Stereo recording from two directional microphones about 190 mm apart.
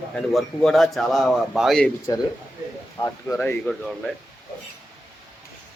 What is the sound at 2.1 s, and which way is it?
A man's voice, 20° left (ahead or behind).